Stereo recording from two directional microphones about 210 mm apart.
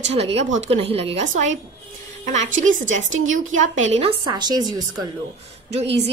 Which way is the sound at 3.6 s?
30° right (ahead or behind).